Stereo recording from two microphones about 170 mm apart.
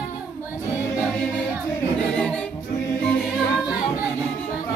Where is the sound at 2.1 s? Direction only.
5° left (ahead or behind).